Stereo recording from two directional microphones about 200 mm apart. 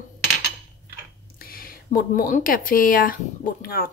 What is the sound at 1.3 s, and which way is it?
Speech, 45° left (ahead or behind).